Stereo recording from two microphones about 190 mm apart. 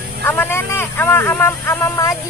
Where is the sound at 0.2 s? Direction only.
10° left (ahead or behind).